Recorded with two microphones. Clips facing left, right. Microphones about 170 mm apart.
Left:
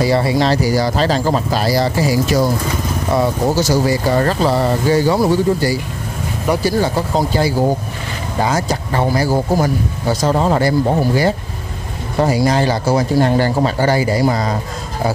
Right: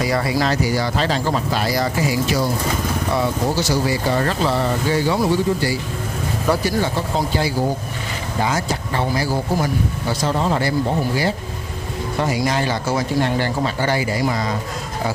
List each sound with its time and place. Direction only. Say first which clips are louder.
0.0 s speech: left 5 dB; 30° left (ahead or behind); by 10.7 s 45° left (ahead or behind)
12.2 s speech: left 6 dB; 35° left (ahead or behind)